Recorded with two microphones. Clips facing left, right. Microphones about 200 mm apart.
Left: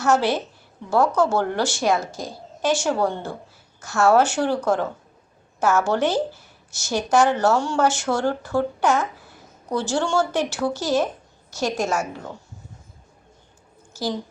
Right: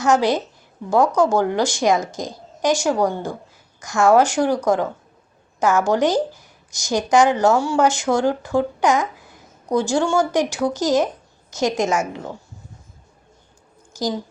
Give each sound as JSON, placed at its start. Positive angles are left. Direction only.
{"t": 0.0, "sound": "a woman's voice", "side_deg": -15}
{"t": 13.9, "sound": "a woman's voice", "side_deg": -15}